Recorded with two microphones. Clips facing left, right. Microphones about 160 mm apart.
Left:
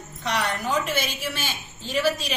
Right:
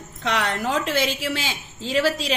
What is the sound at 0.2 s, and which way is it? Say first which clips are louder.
A woman's voice: right 2 dB; 90° right.